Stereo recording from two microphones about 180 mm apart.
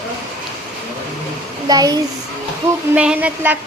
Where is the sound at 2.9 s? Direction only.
5° right (ahead or behind).